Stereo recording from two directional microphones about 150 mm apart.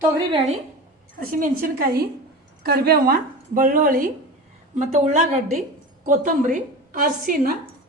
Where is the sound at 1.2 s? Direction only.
70° right (ahead or behind).